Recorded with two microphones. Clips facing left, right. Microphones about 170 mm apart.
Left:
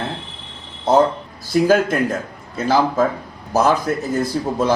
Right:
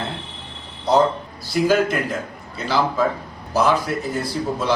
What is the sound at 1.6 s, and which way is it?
Speech, 50° left (ahead or behind).